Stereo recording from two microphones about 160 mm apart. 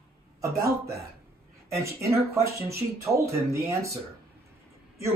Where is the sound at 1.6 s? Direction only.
20° right (ahead or behind).